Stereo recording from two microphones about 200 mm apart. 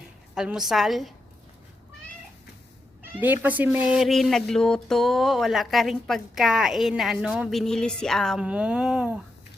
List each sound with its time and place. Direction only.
0.3 s speech: 5° right (ahead or behind)
3.2 s speech: 10° right (ahead or behind)